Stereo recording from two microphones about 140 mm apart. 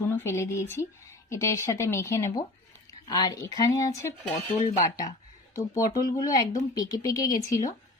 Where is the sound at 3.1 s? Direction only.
30° left (ahead or behind).